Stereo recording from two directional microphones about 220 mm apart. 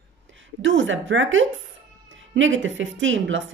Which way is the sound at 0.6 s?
60° right (ahead or behind).